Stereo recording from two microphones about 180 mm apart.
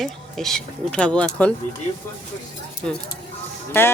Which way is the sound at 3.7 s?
10° left (ahead or behind).